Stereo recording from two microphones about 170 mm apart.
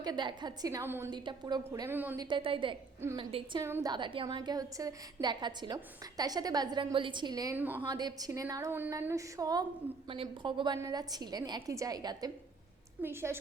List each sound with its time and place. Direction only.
0.0 s a woman's voice: 25° right (ahead or behind)
1.1 s a woman's voice: 25° right (ahead or behind); by 2.1 s 10° right (ahead or behind)
2.1 s a woman's voice: 30° right (ahead or behind)
7.5 s a woman's voice: 10° right (ahead or behind)
7.8 s a woman's voice: 25° right (ahead or behind)